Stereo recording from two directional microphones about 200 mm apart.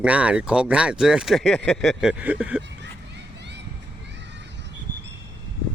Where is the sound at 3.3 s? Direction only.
60° right (ahead or behind).